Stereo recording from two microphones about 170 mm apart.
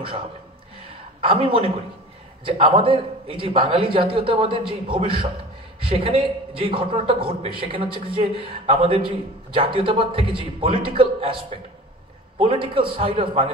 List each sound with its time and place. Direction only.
1.2 s a man's voice: 30° right (ahead or behind)